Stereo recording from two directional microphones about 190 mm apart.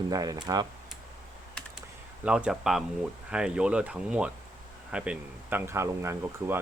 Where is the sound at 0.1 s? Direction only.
20° right (ahead or behind).